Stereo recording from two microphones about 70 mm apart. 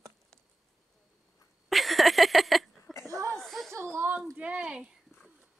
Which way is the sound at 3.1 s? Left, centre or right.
Right.